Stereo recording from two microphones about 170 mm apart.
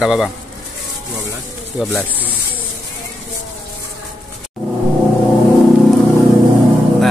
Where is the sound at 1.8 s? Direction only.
5° right (ahead or behind).